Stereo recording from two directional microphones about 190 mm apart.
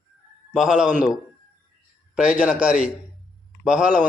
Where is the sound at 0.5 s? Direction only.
5° right (ahead or behind).